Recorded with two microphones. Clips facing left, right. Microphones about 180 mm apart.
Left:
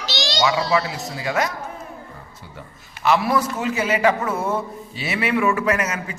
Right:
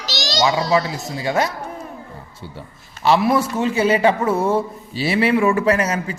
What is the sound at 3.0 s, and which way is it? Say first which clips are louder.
A man's voice: right 3 dB; 25° right (ahead or behind).